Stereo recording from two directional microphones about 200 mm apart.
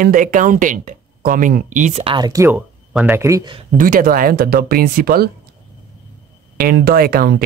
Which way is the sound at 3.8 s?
45° right (ahead or behind).